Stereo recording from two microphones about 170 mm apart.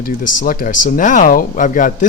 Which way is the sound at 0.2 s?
55° left (ahead or behind).